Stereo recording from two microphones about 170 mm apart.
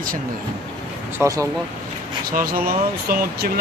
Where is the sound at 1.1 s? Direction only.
20° right (ahead or behind).